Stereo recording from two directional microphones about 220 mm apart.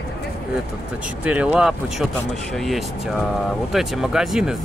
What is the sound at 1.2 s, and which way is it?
Speech, 5° right (ahead or behind).